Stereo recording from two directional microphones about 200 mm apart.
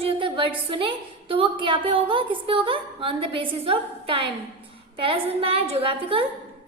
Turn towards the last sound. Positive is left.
turn(degrees=-30)  # may be behind; listen again after turning